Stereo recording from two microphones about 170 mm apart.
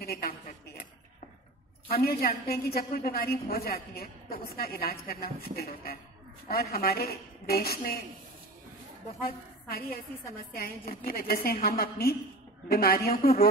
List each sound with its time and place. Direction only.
0.0 s a sound: 65° left (ahead or behind)
1.9 s a woman's voice: 65° left (ahead or behind)
9.2 s a woman's voice: 65° left (ahead or behind)